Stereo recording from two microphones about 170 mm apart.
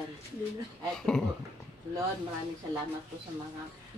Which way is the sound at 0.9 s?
5° left (ahead or behind).